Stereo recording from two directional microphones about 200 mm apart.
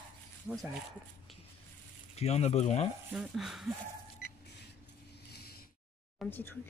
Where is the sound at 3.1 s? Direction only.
Centre (ahead or behind).